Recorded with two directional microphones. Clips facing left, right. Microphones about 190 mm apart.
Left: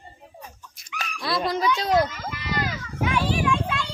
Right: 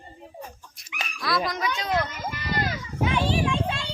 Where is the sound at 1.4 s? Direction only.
30° left (ahead or behind).